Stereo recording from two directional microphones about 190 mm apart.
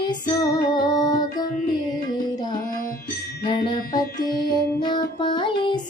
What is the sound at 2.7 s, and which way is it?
Music, 45° left (ahead or behind).